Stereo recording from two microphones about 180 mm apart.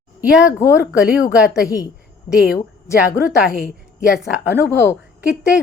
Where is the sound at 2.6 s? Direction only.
20° left (ahead or behind).